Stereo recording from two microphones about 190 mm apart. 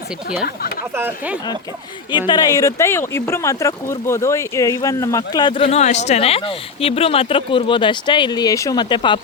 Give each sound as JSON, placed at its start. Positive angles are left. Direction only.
{"t": 0.9, "sound": "speech", "side_deg": -10}
{"t": 2.1, "sound": "speech", "side_deg": 20}